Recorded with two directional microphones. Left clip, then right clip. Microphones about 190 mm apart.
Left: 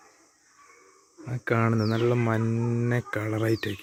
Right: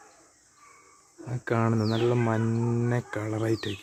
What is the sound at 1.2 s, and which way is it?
Speech, 5° left (ahead or behind).